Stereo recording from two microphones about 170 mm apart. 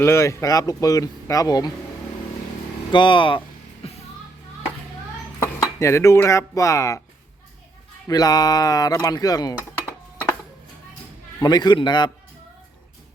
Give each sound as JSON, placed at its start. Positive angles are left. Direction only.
{"t": 0.0, "sound": "speech", "side_deg": 15}
{"t": 2.9, "sound": "speech", "side_deg": 30}
{"t": 5.4, "sound": "dishes", "side_deg": 15}
{"t": 8.0, "sound": "speech", "side_deg": 20}
{"t": 11.3, "sound": "speech", "side_deg": 25}